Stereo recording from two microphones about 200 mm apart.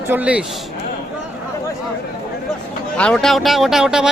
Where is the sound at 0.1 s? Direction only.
5° right (ahead or behind).